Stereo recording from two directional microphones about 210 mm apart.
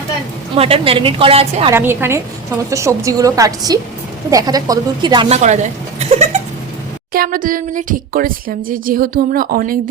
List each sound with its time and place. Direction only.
0.5 s a woman's voice: 25° right (ahead or behind)
1.7 s a woman's voice: 10° right (ahead or behind)
6.0 s a sound: 30° right (ahead or behind)
7.1 s speech: 45° right (ahead or behind)